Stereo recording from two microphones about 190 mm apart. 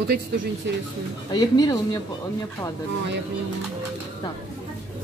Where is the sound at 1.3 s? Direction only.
20° left (ahead or behind).